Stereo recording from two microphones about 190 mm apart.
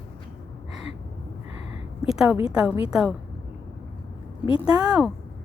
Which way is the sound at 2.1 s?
5° right (ahead or behind).